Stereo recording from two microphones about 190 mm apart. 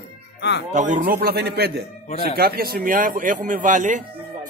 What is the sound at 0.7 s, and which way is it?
A man's voice, 40° right (ahead or behind).